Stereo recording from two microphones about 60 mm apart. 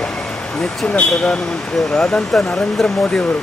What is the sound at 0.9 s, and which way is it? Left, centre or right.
Speech, centre.